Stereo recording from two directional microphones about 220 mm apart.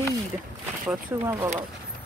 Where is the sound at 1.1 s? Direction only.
10° right (ahead or behind).